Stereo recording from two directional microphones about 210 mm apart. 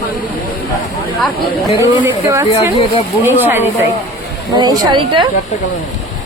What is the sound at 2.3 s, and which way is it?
Speech, 15° right (ahead or behind).